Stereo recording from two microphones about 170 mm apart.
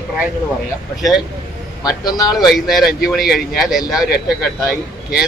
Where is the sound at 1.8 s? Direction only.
20° left (ahead or behind).